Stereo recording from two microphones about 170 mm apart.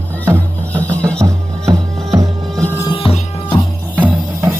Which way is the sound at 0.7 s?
10° left (ahead or behind).